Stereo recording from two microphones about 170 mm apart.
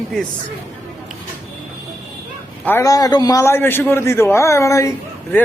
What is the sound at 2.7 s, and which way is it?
A man's voice, 15° left (ahead or behind).